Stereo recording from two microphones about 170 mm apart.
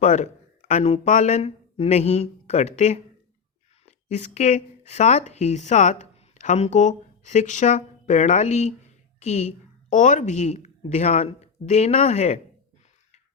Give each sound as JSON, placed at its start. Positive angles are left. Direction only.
{"t": 0.0, "sound": "speech", "side_deg": 45}